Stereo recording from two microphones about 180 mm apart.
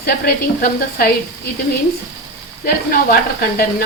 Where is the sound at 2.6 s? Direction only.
55° left (ahead or behind).